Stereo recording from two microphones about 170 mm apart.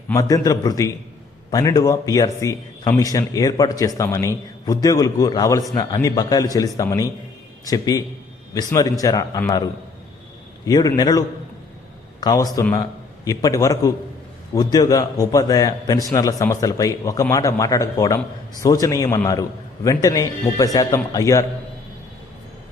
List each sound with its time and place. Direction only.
0.1 s a man's voice: 20° left (ahead or behind)
10.7 s a man's voice: 25° left (ahead or behind)
12.2 s a man's voice: 20° left (ahead or behind)